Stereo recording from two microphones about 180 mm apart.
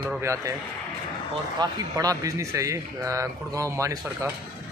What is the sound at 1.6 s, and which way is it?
A man's voice, 20° right (ahead or behind).